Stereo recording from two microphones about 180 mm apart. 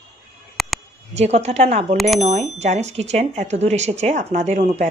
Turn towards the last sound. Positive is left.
turn(degrees=-40)  # may be behind; listen again after turning